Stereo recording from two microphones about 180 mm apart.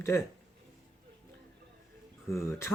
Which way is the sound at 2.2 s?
15° left (ahead or behind).